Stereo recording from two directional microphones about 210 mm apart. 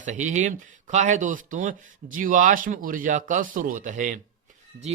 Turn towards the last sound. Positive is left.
turn(degrees=-35)  # may be behind; listen again after turning